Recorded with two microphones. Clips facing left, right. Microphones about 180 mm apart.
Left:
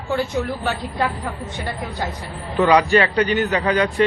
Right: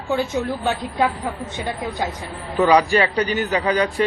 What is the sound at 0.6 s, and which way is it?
Speech, 20° right (ahead or behind).